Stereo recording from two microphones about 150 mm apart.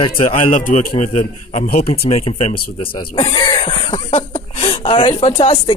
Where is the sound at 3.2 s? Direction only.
35° left (ahead or behind).